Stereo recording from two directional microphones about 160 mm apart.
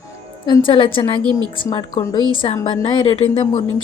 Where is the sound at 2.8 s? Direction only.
30° left (ahead or behind).